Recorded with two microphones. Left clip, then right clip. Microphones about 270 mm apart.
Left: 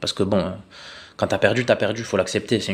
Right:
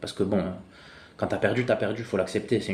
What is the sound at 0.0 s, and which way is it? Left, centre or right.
Speech, left.